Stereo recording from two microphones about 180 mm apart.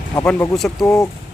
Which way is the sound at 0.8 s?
15° left (ahead or behind).